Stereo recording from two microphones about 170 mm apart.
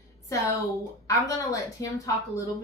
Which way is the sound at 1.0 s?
20° left (ahead or behind).